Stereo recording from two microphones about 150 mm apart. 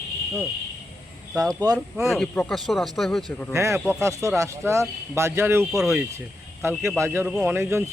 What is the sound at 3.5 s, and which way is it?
Speech, 20° right (ahead or behind).